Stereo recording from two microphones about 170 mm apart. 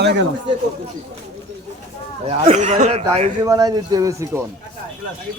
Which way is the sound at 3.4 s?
20° right (ahead or behind).